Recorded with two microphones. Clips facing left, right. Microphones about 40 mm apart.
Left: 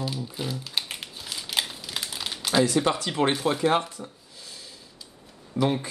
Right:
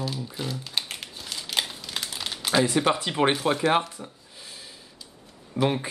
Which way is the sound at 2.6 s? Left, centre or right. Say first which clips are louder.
Even; centre.